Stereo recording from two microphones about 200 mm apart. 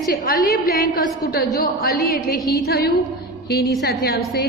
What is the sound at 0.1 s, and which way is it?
A woman's voice, 45° left (ahead or behind).